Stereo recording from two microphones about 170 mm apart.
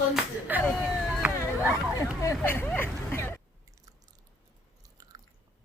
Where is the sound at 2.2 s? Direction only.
15° left (ahead or behind).